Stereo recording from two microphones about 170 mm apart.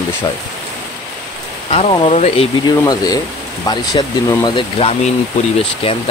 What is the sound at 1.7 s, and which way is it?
Speech, 35° left (ahead or behind).